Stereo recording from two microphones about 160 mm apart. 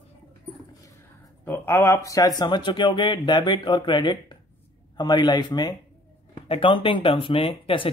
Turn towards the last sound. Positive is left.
turn(degrees=35)  # may be behind; listen again after turning